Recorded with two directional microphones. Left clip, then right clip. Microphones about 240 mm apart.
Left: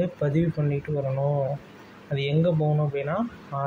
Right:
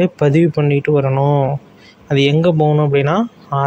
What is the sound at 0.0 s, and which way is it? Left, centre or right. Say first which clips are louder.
Speech: right 12 dB; right.